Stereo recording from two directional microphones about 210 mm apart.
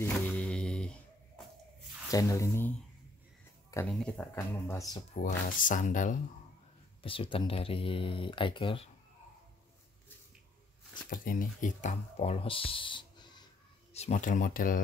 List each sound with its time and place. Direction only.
0.0 s a sound: 5° left (ahead or behind)
2.0 s speech: 15° left (ahead or behind)
3.9 s speech: 5° left (ahead or behind)
5.2 s speech: 35° left (ahead or behind)
7.0 s speech: 25° left (ahead or behind)
11.1 s speech: 40° left (ahead or behind)